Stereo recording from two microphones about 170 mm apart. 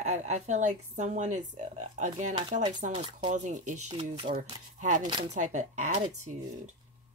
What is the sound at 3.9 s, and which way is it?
Speech, 30° right (ahead or behind).